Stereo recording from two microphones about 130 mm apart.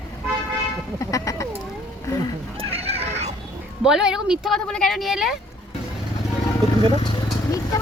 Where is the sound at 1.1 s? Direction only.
25° left (ahead or behind).